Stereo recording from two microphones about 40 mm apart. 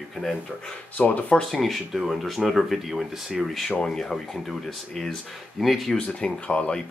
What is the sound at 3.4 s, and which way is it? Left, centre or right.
Speech, centre.